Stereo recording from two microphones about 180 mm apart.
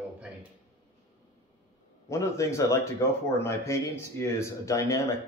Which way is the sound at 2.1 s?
15° left (ahead or behind).